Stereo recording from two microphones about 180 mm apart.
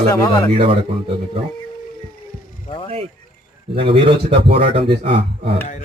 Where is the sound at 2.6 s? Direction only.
30° left (ahead or behind).